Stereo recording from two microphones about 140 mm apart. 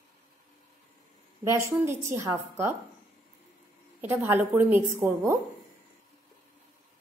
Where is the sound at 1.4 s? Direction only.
20° right (ahead or behind).